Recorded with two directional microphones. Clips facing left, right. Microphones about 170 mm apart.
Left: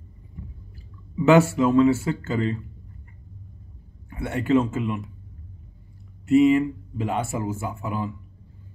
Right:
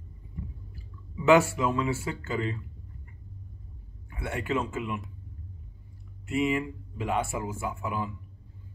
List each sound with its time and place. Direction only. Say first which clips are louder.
1.2 s speech: left 4 dB; 25° left (ahead or behind)
4.1 s speech: left 9 dB; 30° left (ahead or behind)
6.2 s speech: left 11 dB; 25° left (ahead or behind)